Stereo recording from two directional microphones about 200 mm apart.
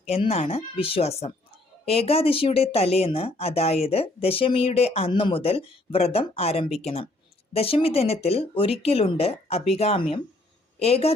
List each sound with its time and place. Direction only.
0.0 s a woman's voice: 30° left (ahead or behind)